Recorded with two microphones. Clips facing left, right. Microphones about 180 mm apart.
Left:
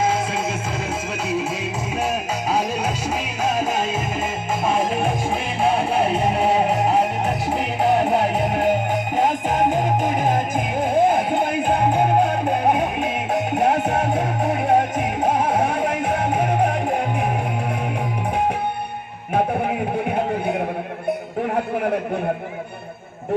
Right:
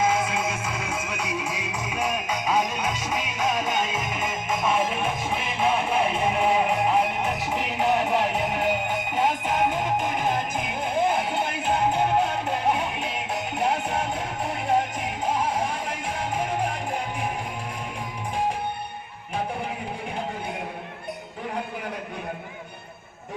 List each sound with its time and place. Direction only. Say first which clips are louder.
0.0 s music: left 2 dB; 30° left (ahead or behind); by 17.0 s 55° left (ahead or behind)
19.3 s music: left 9 dB; 55° left (ahead or behind)